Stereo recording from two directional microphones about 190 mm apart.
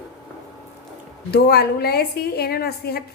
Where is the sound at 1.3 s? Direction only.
55° left (ahead or behind).